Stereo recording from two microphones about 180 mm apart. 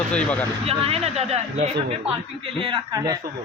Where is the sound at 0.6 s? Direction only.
35° right (ahead or behind).